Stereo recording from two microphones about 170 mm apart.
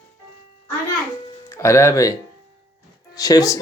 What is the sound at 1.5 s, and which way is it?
Speech, 15° left (ahead or behind).